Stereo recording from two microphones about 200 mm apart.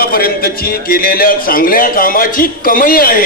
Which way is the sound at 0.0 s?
50° left (ahead or behind).